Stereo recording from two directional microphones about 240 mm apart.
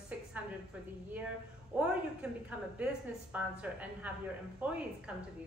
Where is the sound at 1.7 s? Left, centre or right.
Centre.